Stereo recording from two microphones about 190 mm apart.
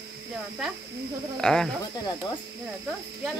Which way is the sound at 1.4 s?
5° left (ahead or behind).